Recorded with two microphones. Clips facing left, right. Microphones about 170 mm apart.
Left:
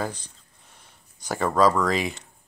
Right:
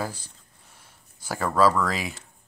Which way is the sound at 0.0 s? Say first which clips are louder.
Left 2 dB; 5° right (ahead or behind).